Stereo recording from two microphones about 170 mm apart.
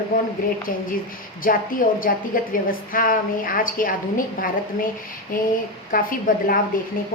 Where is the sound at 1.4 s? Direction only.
55° left (ahead or behind).